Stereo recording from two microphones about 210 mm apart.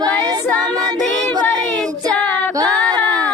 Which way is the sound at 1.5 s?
Centre (ahead or behind).